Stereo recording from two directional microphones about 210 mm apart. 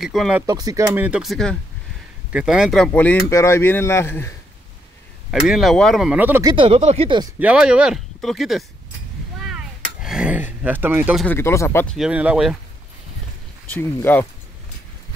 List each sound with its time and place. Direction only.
0.0 s speech: centre (ahead or behind)
0.5 s speech: 15° right (ahead or behind); by 4.4 s 10° left (ahead or behind)
5.3 s speech: centre (ahead or behind)
6.5 s speech: 25° right (ahead or behind)
7.3 s speech: 5° right (ahead or behind)
9.4 s a sound: centre (ahead or behind)
11.2 s speech: 10° left (ahead or behind); by 12.5 s 5° right (ahead or behind)
13.7 s speech: 10° left (ahead or behind)